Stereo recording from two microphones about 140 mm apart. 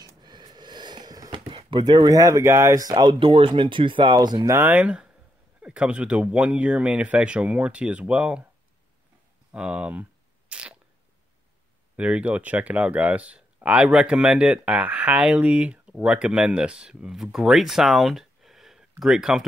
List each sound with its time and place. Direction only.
0.0 s a sound: 30° right (ahead or behind)
2.0 s speech: 25° right (ahead or behind)
4.6 s speech: 10° right (ahead or behind)
9.5 s speech: 10° right (ahead or behind)
10.5 s a sound: 10° right (ahead or behind)
12.0 s speech: 10° right (ahead or behind)